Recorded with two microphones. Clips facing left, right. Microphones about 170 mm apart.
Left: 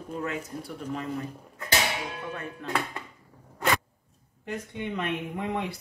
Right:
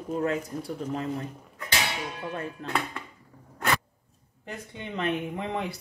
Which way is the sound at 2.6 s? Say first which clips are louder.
Left 4 dB; 35° right (ahead or behind).